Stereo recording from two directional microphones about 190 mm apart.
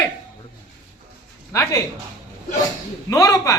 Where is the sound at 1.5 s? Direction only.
20° left (ahead or behind).